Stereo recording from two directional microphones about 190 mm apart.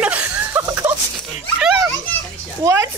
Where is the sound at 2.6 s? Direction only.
15° right (ahead or behind).